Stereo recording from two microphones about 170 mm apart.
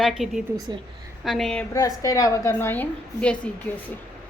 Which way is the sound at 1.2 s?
Centre (ahead or behind).